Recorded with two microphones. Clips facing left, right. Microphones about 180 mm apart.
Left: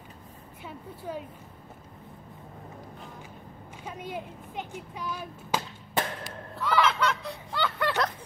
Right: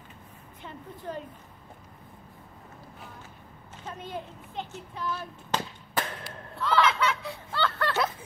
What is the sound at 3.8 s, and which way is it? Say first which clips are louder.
Speech: left 1 dB; 10° left (ahead or behind).